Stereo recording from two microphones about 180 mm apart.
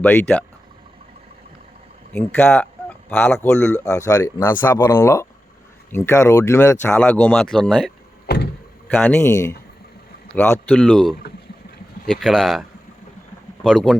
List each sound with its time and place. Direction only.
0.0 s speech: 10° left (ahead or behind)
2.1 s speech: 10° left (ahead or behind)
10.3 s speech: 10° left (ahead or behind)
13.7 s speech: 5° left (ahead or behind)